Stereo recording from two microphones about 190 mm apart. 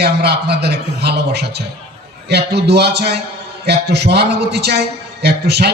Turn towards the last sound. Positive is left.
turn(degrees=-60)  # may be behind; listen again after turning